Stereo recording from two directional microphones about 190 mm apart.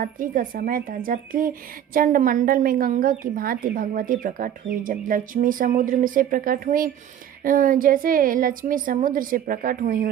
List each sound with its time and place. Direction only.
0.0 s speech: 45° right (ahead or behind)